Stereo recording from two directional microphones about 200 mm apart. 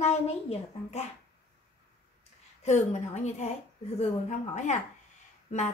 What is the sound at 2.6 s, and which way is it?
Speech, 35° left (ahead or behind).